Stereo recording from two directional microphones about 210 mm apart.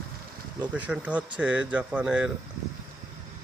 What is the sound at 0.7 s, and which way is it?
Speech, 5° right (ahead or behind).